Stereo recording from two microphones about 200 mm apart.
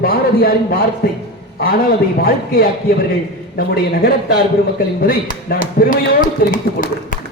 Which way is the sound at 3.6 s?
50° left (ahead or behind).